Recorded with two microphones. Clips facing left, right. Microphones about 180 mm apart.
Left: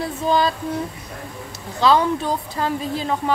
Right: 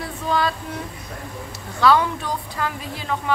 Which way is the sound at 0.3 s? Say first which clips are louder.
Left 4 dB; 30° left (ahead or behind).